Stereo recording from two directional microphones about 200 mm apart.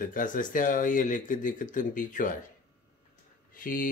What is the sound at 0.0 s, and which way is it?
Speech, 40° left (ahead or behind).